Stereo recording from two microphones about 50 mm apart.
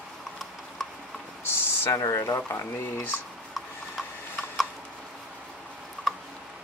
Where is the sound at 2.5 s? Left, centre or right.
Left.